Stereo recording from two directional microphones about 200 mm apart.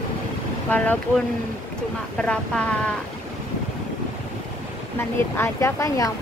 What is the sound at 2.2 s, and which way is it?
Speech, 5° left (ahead or behind).